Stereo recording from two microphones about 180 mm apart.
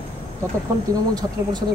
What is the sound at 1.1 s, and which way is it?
Speech, 20° right (ahead or behind).